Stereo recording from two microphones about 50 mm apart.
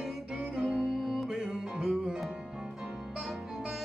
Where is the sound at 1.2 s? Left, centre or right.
Centre.